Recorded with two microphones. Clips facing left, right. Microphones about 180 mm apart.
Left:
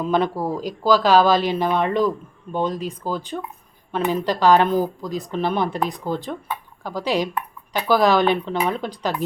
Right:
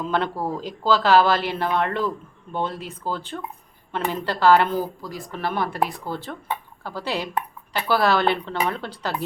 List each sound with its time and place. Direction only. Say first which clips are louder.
0.0 s speech: left 4 dB; 15° left (ahead or behind)